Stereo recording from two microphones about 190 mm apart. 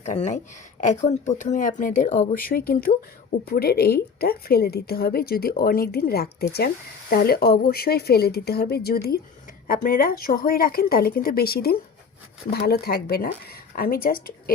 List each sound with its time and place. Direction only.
0.0 s a woman's voice: 40° left (ahead or behind)